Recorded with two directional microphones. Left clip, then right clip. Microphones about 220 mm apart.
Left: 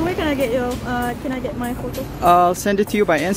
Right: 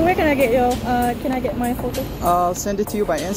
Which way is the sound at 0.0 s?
10° left (ahead or behind).